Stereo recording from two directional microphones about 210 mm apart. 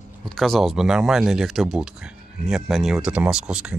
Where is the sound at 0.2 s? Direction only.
Centre (ahead or behind).